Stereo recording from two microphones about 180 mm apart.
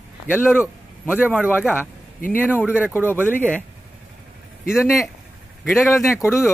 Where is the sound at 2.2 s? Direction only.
50° left (ahead or behind).